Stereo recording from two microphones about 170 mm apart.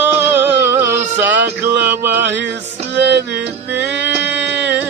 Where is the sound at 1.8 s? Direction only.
10° right (ahead or behind).